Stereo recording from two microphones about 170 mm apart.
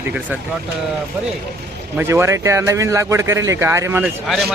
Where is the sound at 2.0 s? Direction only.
15° right (ahead or behind).